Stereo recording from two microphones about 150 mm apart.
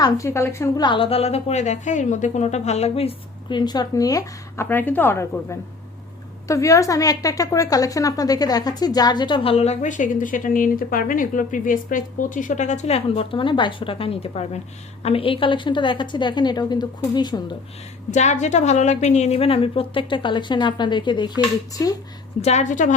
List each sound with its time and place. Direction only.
0.0 s a woman's voice: 20° left (ahead or behind)
0.8 s a woman's voice: 35° left (ahead or behind)
18.1 s a woman's voice: 50° left (ahead or behind); by 21.9 s 25° left (ahead or behind)
22.4 s a woman's voice: 50° left (ahead or behind)